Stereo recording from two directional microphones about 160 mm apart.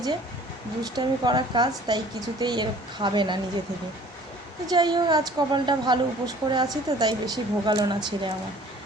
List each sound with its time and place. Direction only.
0.8 s a woman's voice: 25° right (ahead or behind)
4.6 s a woman's voice: 25° right (ahead or behind)